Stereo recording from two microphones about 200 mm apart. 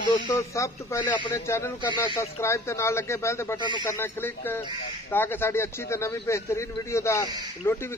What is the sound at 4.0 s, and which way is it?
Speech, 10° left (ahead or behind).